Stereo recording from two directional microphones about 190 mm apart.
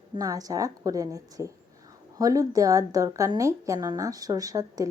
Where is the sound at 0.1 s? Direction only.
20° right (ahead or behind).